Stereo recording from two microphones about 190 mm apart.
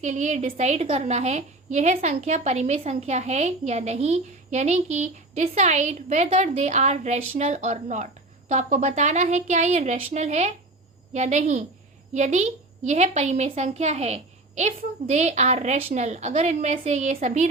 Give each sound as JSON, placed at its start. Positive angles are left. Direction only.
{"t": 0.0, "sound": "a woman's voice", "side_deg": -40}